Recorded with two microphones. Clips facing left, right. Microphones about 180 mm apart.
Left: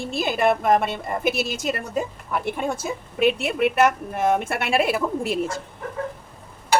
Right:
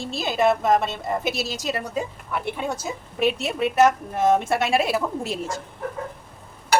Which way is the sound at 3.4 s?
60° left (ahead or behind).